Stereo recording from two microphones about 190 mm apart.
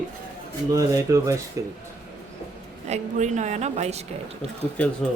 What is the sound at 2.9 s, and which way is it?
A woman's voice, 40° right (ahead or behind).